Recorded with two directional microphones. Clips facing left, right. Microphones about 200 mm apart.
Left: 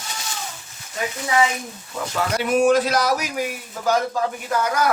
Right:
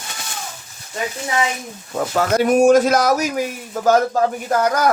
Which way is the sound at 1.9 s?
45° right (ahead or behind).